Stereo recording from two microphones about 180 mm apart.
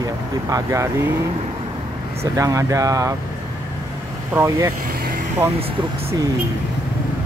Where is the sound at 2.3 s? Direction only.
15° right (ahead or behind).